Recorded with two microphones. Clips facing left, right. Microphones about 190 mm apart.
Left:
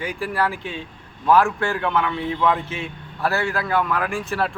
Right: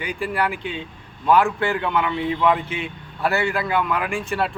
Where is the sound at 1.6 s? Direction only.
Centre (ahead or behind).